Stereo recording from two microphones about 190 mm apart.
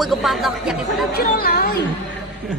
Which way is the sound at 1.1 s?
55° left (ahead or behind).